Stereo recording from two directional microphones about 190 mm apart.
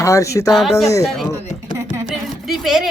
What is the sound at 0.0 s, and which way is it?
Speech, 15° left (ahead or behind).